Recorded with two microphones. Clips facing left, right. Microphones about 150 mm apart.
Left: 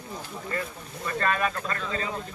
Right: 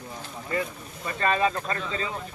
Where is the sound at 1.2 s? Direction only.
25° right (ahead or behind).